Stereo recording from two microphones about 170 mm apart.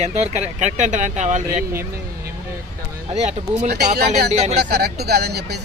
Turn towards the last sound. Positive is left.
turn(degrees=-70)  # may be behind; listen again after turning